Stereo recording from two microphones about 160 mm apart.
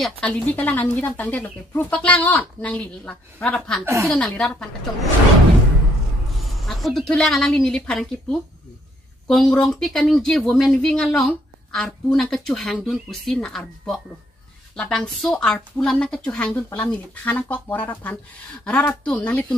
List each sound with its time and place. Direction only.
0.0 s speech: 5° left (ahead or behind)
3.8 s a woman's voice: 20° right (ahead or behind)
4.1 s speech: 5° left (ahead or behind)
6.8 s speech: centre (ahead or behind)